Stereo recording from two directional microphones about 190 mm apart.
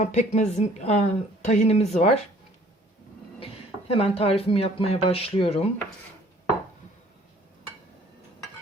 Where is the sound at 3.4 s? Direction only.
30° left (ahead or behind).